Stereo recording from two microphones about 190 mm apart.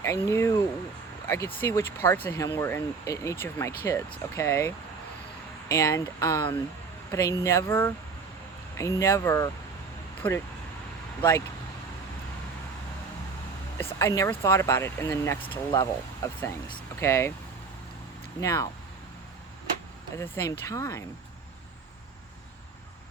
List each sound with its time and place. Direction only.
0.0 s speech: 15° left (ahead or behind)
1.7 s speech: 15° left (ahead or behind)
14.0 s speech: 15° left (ahead or behind)
18.3 s speech: 15° left (ahead or behind)
20.1 s speech: 15° left (ahead or behind)